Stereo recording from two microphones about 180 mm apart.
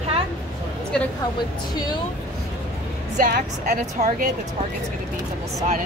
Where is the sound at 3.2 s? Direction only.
50° right (ahead or behind).